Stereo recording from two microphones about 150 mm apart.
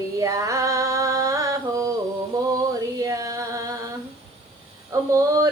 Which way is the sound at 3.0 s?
25° right (ahead or behind).